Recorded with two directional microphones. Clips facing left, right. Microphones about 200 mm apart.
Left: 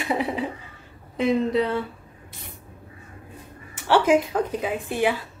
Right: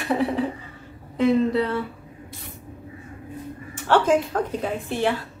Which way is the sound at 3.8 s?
10° left (ahead or behind).